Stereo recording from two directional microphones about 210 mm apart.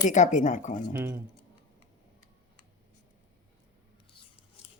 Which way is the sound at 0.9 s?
10° right (ahead or behind).